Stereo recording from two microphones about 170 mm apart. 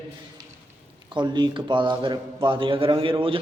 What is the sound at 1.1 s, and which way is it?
A man's voice, 25° right (ahead or behind).